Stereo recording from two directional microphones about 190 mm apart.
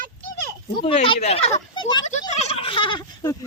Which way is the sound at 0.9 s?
30° left (ahead or behind).